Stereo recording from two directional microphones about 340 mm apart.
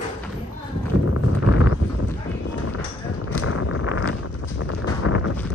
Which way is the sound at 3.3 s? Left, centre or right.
Left.